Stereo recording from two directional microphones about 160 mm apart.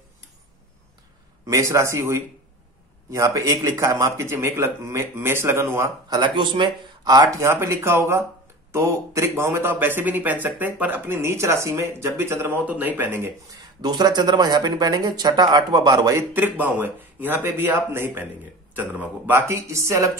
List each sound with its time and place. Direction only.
1.4 s a man's voice: 20° right (ahead or behind)
13.5 s a man's voice: 25° right (ahead or behind)